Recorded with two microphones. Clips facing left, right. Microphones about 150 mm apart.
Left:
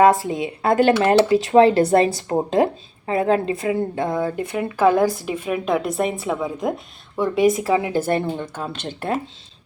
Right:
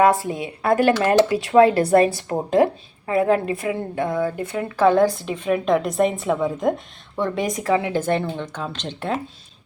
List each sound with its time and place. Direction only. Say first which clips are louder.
0.0 s speech: left 2 dB; 20° left (ahead or behind)
4.8 s a woman's voice: right 1 dB; 10° left (ahead or behind)